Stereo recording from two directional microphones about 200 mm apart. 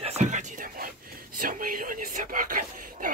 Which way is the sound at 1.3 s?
45° right (ahead or behind).